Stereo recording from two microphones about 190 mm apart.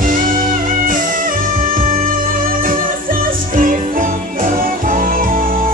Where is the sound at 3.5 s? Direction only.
45° right (ahead or behind).